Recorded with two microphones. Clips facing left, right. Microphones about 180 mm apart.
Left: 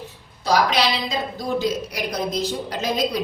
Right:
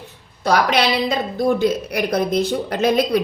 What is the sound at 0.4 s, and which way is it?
Speech, 60° right (ahead or behind).